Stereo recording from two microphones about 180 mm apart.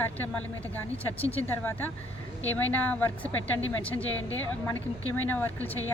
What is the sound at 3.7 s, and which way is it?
Speech, 10° left (ahead or behind).